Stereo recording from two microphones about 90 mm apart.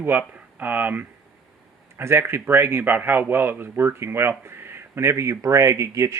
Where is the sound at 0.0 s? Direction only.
20° right (ahead or behind).